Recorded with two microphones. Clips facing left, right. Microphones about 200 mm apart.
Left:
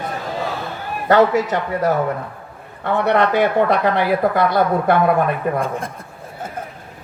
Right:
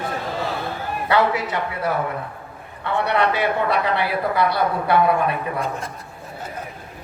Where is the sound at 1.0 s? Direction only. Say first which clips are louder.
Left 6 dB; 45° left (ahead or behind).